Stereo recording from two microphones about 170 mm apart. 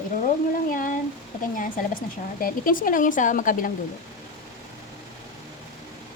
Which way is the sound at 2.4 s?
55° left (ahead or behind).